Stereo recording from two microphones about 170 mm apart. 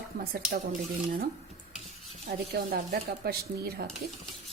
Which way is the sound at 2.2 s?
65° right (ahead or behind).